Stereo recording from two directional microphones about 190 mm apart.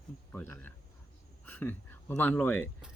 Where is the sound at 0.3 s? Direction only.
10° left (ahead or behind).